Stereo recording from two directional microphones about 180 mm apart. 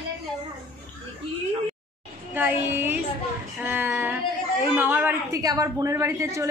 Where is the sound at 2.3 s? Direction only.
10° right (ahead or behind).